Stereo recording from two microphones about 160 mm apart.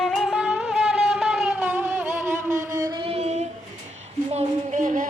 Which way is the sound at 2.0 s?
50° right (ahead or behind).